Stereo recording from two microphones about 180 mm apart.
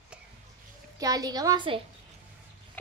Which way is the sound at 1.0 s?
20° right (ahead or behind).